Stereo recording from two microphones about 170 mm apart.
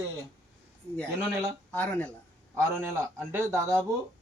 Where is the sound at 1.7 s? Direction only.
10° left (ahead or behind).